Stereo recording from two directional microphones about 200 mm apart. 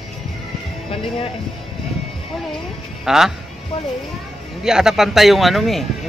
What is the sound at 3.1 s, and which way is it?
Speech, centre (ahead or behind).